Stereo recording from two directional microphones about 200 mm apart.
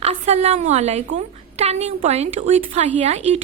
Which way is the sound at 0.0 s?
30° right (ahead or behind).